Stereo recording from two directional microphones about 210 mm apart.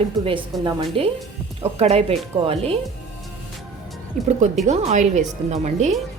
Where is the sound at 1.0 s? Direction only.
25° right (ahead or behind).